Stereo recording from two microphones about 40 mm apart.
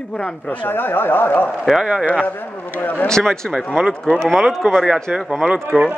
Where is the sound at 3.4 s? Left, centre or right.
Centre.